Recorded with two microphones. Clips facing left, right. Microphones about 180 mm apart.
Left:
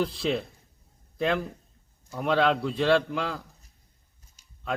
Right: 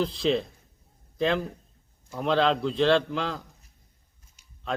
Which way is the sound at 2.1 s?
5° left (ahead or behind).